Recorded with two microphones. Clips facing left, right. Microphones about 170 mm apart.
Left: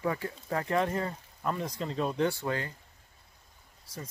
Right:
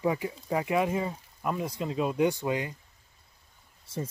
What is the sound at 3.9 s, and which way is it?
Speech, 25° right (ahead or behind).